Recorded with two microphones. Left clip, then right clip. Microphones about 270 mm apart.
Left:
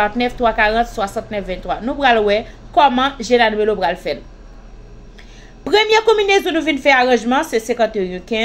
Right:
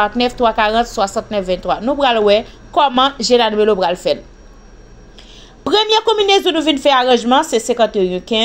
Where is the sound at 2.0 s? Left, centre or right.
Right.